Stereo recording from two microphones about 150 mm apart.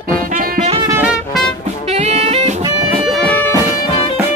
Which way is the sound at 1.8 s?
45° right (ahead or behind).